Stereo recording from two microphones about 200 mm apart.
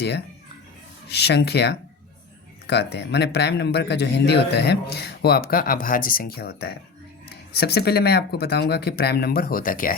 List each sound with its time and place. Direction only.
1.1 s speech: 55° left (ahead or behind)